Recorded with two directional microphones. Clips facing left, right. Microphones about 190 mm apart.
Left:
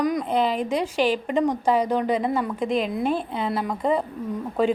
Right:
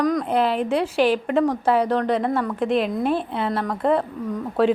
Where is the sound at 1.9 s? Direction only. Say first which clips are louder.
Right 2 dB; centre (ahead or behind).